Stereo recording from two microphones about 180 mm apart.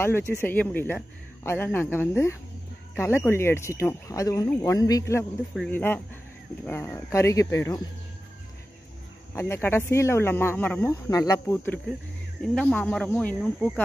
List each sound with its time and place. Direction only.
0.0 s speech: 15° left (ahead or behind)
5.5 s speech: 5° left (ahead or behind)
9.3 s speech: 10° left (ahead or behind)